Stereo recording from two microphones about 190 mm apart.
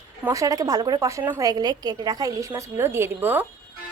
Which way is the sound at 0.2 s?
15° right (ahead or behind).